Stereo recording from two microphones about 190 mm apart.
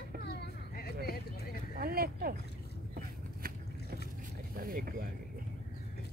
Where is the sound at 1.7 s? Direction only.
50° right (ahead or behind).